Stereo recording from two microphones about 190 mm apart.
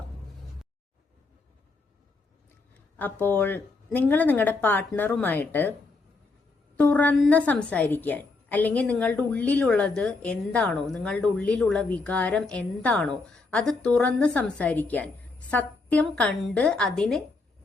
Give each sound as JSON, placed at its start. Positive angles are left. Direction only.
{"t": 3.0, "sound": "a woman's voice", "side_deg": 10}
{"t": 6.7, "sound": "a woman's voice", "side_deg": 10}